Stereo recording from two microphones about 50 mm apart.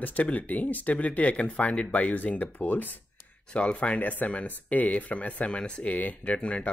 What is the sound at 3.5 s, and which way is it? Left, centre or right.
Speech, left.